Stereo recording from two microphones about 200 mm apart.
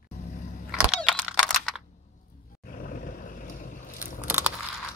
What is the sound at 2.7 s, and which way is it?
Vehicle, 45° left (ahead or behind).